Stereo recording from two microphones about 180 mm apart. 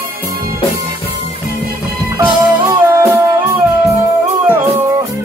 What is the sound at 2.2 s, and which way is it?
Music, 15° right (ahead or behind).